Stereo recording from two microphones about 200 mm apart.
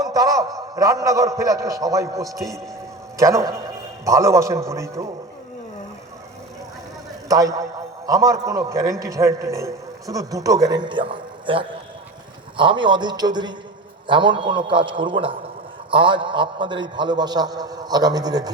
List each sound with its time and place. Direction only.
0.0 s a man's voice: 20° right (ahead or behind)
7.3 s a man's voice: 15° right (ahead or behind)